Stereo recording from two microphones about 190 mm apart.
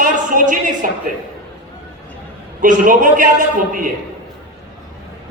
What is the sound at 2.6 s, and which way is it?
A man's voice, 45° right (ahead or behind).